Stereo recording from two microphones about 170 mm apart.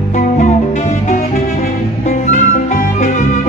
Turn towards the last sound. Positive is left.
turn(degrees=45)  # may be behind; listen again after turning